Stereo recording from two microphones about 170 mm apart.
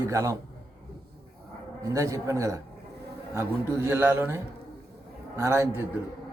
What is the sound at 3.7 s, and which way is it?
Speech, 10° right (ahead or behind).